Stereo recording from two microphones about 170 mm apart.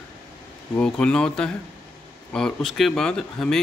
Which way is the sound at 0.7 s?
5° left (ahead or behind).